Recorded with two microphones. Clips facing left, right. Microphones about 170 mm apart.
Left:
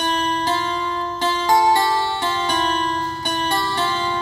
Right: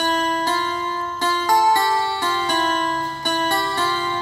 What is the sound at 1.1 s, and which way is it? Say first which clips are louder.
Music: left 1 dB; 20° left (ahead or behind).